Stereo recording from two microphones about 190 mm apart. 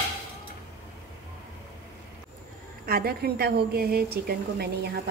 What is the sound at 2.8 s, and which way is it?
A woman's voice, 55° right (ahead or behind).